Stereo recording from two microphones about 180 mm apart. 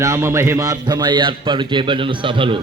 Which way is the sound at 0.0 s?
15° right (ahead or behind).